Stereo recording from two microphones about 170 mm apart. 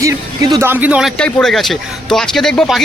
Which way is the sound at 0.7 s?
10° right (ahead or behind).